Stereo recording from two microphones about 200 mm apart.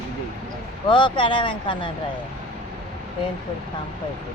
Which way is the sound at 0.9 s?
25° left (ahead or behind).